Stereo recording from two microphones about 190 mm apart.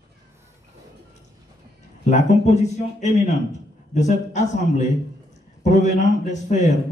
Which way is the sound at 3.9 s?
40° left (ahead or behind).